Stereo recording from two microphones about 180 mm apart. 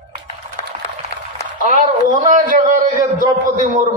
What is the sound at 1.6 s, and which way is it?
A man's voice, 45° right (ahead or behind).